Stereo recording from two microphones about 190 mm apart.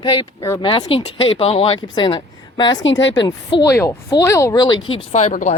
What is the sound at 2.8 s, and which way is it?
Speech, 75° left (ahead or behind).